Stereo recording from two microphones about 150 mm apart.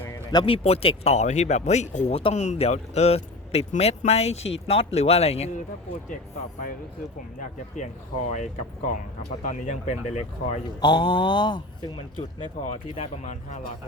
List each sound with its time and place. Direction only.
0.3 s speech: 30° left (ahead or behind)
7.3 s speech: 55° left (ahead or behind)
10.8 s mantra: 30° left (ahead or behind)
12.4 s speech: 40° left (ahead or behind)